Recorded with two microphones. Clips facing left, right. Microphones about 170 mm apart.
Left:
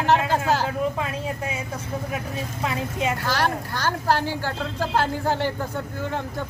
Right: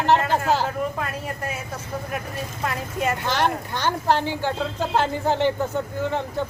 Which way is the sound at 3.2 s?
20° right (ahead or behind).